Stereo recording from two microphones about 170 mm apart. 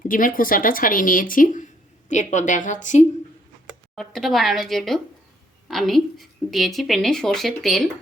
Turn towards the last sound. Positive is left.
turn(degrees=0)  # may be behind; listen again after turning